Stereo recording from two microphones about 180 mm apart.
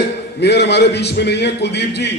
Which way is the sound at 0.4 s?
70° left (ahead or behind).